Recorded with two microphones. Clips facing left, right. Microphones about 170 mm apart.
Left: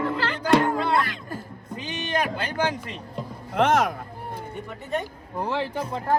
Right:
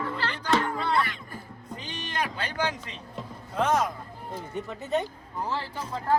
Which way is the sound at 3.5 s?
75° left (ahead or behind).